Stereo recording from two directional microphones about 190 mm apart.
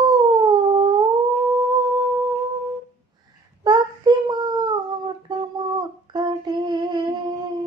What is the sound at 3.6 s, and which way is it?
Child singing, 20° right (ahead or behind).